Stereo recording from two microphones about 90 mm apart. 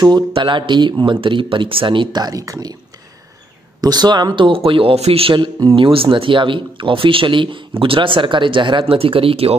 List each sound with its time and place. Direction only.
0.3 s speech: 60° right (ahead or behind)
2.2 s speech: 40° right (ahead or behind)
3.8 s speech: 50° right (ahead or behind)
4.5 s speech: 85° right